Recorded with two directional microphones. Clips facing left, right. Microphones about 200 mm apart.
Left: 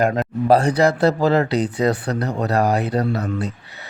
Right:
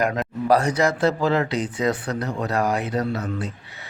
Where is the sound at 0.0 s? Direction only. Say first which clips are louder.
Left 4 dB; 30° left (ahead or behind).